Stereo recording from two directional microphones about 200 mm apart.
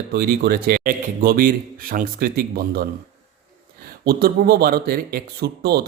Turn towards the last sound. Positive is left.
turn(degrees=-55)  # may be behind; listen again after turning